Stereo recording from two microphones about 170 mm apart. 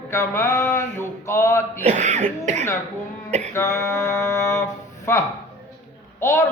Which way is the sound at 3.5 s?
15° left (ahead or behind).